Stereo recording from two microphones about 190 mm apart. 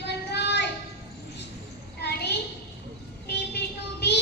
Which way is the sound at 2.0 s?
60° left (ahead or behind).